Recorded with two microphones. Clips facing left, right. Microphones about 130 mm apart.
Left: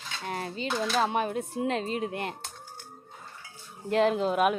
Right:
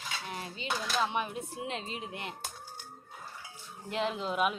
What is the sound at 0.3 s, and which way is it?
Cutlery, 45° left (ahead or behind).